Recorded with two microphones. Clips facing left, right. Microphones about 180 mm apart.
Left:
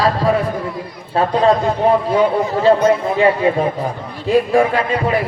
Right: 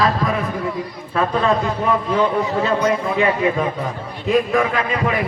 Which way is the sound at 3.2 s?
30° left (ahead or behind).